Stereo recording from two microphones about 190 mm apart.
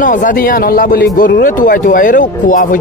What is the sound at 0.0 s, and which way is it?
A man's voice, 45° left (ahead or behind).